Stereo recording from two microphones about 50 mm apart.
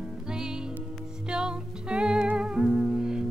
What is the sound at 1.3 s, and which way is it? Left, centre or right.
Music, centre.